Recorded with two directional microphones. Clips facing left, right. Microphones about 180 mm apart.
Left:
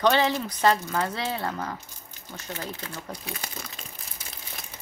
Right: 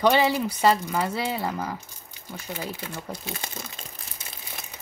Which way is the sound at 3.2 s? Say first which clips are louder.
Right 2 dB; 25° right (ahead or behind).